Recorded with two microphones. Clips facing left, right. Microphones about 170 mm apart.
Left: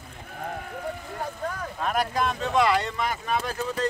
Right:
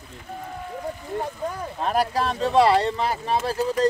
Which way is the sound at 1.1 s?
25° right (ahead or behind).